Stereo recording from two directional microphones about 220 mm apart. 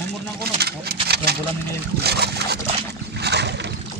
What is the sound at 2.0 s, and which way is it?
Boat, 45° right (ahead or behind).